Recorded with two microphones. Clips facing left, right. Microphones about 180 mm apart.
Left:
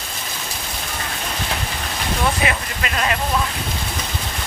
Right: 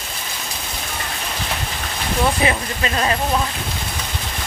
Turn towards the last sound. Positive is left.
turn(degrees=-30)  # may be behind; listen again after turning